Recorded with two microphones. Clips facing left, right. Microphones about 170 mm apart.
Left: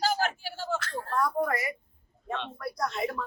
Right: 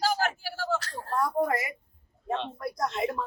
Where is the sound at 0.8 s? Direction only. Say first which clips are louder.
Even; 40° right (ahead or behind).